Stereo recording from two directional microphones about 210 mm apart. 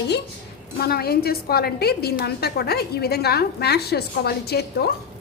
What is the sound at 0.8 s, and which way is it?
Speech, 45° left (ahead or behind).